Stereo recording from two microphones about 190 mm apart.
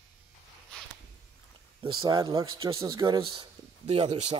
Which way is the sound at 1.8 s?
25° right (ahead or behind).